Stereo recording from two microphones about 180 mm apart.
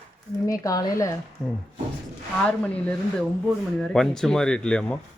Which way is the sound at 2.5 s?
5° left (ahead or behind).